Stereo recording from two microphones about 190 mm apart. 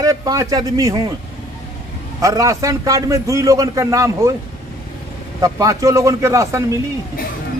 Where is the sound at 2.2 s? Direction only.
15° right (ahead or behind).